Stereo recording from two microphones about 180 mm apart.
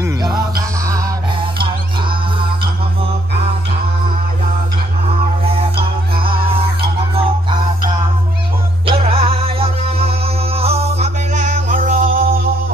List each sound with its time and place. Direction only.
0.0 s music: 25° right (ahead or behind)
5.4 s music: 30° right (ahead or behind)
8.8 s music: 35° right (ahead or behind); by 12.4 s 50° right (ahead or behind)